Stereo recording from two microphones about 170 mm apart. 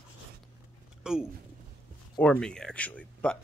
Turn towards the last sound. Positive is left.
turn(degrees=5)  # may be behind; listen again after turning